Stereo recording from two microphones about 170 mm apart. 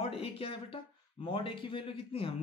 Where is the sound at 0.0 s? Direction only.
35° left (ahead or behind).